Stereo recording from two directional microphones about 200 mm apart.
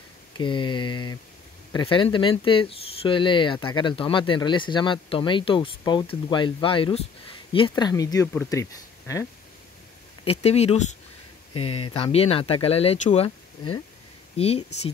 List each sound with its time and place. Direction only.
0.4 s speech: 25° left (ahead or behind)
10.2 s speech: 30° left (ahead or behind)
14.3 s speech: 30° left (ahead or behind)